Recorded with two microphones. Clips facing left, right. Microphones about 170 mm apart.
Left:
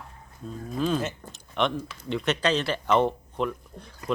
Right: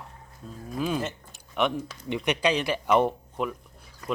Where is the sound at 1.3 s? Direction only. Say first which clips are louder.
Even; 5° right (ahead or behind).